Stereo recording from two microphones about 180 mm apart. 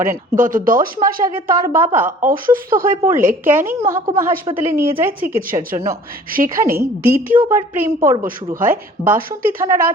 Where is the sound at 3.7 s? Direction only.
15° right (ahead or behind).